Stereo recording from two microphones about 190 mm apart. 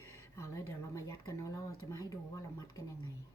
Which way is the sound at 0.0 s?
15° left (ahead or behind).